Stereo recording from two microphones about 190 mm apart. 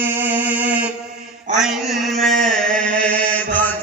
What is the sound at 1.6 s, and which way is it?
Chant, centre (ahead or behind).